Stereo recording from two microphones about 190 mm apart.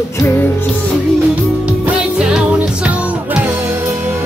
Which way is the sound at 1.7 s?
5° right (ahead or behind).